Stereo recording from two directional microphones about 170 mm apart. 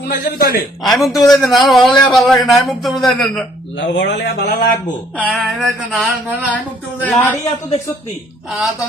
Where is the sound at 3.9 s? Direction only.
90° left.